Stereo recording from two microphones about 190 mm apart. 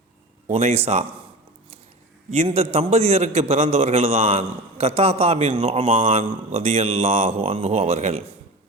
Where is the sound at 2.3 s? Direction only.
35° right (ahead or behind).